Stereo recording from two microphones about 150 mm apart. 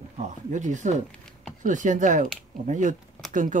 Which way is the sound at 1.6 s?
55° right (ahead or behind).